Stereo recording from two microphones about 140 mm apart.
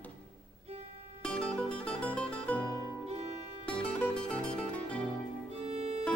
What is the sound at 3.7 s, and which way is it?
Music, 5° left (ahead or behind).